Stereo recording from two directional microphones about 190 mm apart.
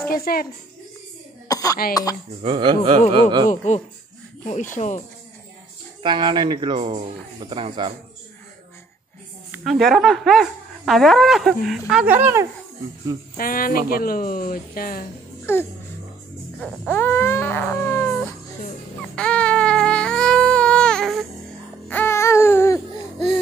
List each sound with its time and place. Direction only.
0.1 s speech: 50° left (ahead or behind)
1.5 s cough: 20° left (ahead or behind)
2.4 s speech: 25° right (ahead or behind)
3.4 s speech: 40° left (ahead or behind)
6.0 s speech: 25° right (ahead or behind)
9.5 s speech: centre (ahead or behind)
13.4 s speech: 50° left (ahead or behind)
15.5 s music: 10° left (ahead or behind)
16.6 s baby cry: 10° left (ahead or behind)
21.8 s a sound: 10° left (ahead or behind)